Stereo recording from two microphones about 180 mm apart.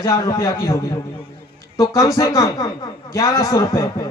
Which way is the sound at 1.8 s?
20° left (ahead or behind).